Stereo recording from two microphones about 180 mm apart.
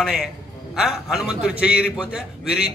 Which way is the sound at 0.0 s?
Centre (ahead or behind).